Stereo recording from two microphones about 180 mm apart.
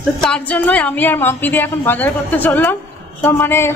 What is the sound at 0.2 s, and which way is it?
A woman's voice, 5° left (ahead or behind).